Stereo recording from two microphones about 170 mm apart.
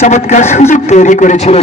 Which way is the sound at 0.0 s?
40° left (ahead or behind).